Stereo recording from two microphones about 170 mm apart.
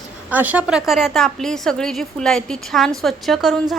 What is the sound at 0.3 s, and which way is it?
A woman's voice, 10° right (ahead or behind).